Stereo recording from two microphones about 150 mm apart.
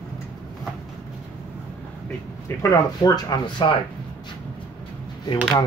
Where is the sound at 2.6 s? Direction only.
20° left (ahead or behind).